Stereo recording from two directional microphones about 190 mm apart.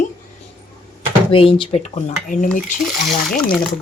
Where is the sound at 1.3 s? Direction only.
30° left (ahead or behind).